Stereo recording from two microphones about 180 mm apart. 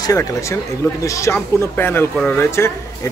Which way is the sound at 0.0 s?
20° left (ahead or behind).